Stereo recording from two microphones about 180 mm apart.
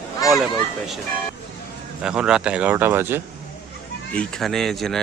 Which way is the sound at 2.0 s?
5° right (ahead or behind).